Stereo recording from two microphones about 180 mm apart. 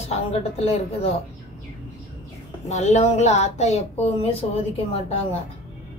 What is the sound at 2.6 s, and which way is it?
Speech, 40° left (ahead or behind).